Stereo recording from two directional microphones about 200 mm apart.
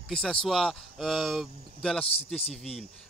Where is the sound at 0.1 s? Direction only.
5° left (ahead or behind).